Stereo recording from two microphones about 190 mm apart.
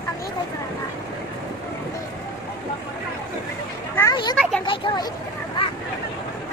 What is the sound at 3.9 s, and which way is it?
Speech, 20° left (ahead or behind).